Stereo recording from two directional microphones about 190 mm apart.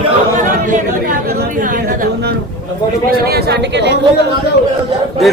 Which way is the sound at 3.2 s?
55° right (ahead or behind).